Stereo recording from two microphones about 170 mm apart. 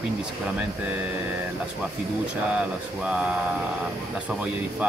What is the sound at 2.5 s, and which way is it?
Speech, 5° right (ahead or behind).